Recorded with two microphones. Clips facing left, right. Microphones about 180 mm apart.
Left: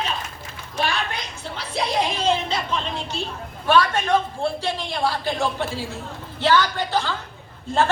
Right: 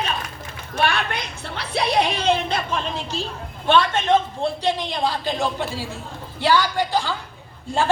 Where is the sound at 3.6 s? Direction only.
25° right (ahead or behind).